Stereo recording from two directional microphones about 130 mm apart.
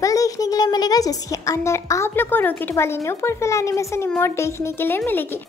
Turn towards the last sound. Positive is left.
turn(degrees=15)  # may be behind; listen again after turning